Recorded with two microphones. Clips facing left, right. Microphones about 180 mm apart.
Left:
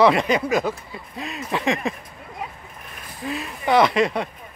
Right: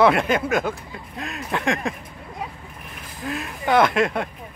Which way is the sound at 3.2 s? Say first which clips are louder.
Even; centre (ahead or behind).